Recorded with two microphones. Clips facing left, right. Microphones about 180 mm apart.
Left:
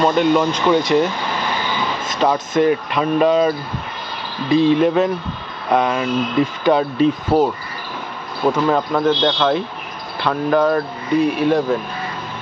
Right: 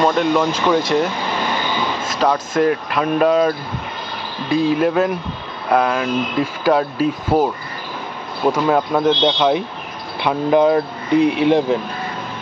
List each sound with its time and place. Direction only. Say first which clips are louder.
0.0 s speech: left 1 dB; centre (ahead or behind)
2.0 s speech: left 1 dB; centre (ahead or behind)
4.6 s speech: left 2 dB; 5° right (ahead or behind)
8.5 s speech: even; 5° right (ahead or behind)